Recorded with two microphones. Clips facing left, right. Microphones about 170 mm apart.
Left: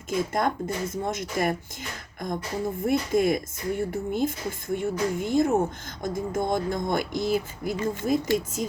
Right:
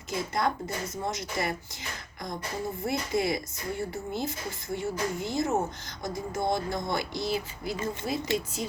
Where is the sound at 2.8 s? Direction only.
50° left (ahead or behind).